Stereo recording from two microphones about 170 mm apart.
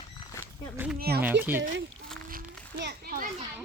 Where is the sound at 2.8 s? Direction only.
65° right (ahead or behind).